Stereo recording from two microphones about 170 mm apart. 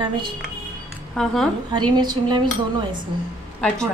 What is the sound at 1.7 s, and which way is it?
Speech, 25° right (ahead or behind).